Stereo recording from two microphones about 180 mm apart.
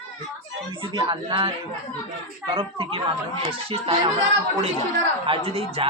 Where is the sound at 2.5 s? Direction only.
30° right (ahead or behind).